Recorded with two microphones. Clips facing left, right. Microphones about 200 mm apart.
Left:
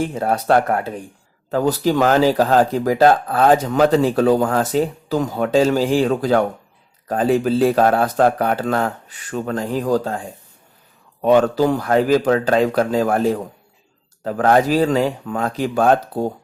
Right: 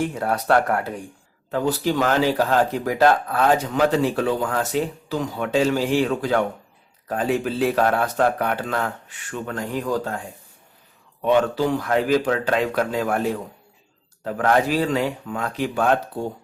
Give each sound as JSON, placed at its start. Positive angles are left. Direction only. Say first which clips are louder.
{"t": 0.1, "sound": "speech", "louder": "left 3 dB", "side_deg": 25}
{"t": 1.5, "sound": "speech", "louder": "left 4 dB", "side_deg": 40}
{"t": 11.2, "sound": "speech", "louder": "left 5 dB", "side_deg": 40}